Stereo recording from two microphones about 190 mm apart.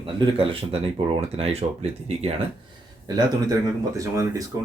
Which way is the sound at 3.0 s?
20° right (ahead or behind).